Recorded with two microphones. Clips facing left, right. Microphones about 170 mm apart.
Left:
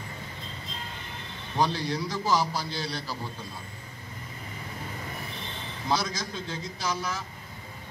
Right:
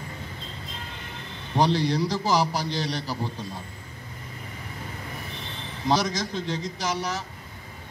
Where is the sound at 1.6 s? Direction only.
15° right (ahead or behind).